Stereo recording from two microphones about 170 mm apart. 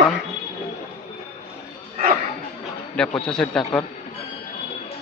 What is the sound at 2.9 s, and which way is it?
Speech, 5° left (ahead or behind).